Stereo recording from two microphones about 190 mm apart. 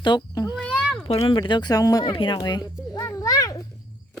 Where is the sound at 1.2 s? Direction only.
25° left (ahead or behind).